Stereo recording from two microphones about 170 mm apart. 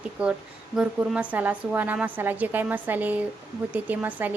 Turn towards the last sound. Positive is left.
turn(degrees=-10)  # may be behind; listen again after turning